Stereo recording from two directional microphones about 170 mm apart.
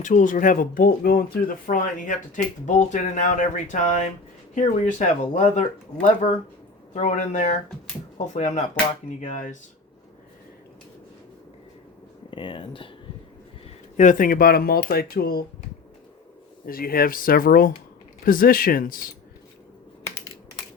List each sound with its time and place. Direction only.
0.0 s speech: 50° left (ahead or behind)
12.3 s speech: 30° left (ahead or behind)
13.9 s speech: 50° left (ahead or behind)
16.6 s speech: 60° left (ahead or behind)